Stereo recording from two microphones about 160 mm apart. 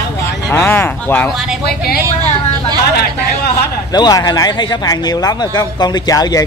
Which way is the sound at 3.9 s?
25° left (ahead or behind).